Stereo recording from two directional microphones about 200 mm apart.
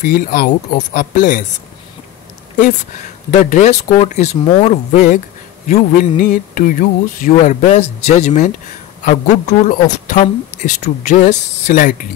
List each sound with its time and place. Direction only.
0.0 s speech: 45° left (ahead or behind)
3.3 s speech: 40° left (ahead or behind)